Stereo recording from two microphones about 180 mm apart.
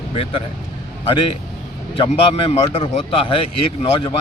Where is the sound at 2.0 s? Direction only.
35° left (ahead or behind).